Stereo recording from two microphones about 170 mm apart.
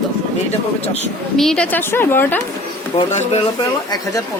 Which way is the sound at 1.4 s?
5° left (ahead or behind).